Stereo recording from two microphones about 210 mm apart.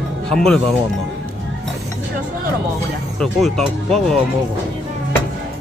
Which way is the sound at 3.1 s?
5° left (ahead or behind).